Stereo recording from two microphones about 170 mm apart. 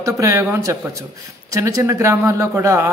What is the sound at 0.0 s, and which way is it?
A man's voice, 15° right (ahead or behind).